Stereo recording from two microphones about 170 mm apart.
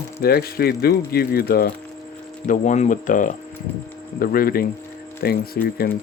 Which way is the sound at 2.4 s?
45° left (ahead or behind).